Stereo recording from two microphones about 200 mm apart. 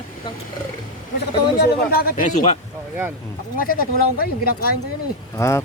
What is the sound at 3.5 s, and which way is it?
Speech, 45° left (ahead or behind).